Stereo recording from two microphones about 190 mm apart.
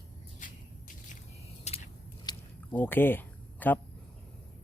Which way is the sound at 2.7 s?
10° left (ahead or behind).